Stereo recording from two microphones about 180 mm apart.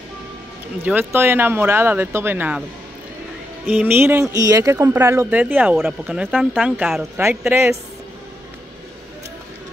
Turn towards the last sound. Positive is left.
turn(degrees=-15)  # may be behind; listen again after turning